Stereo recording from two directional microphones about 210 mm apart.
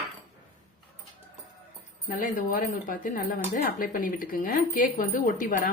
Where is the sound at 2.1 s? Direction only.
40° left (ahead or behind).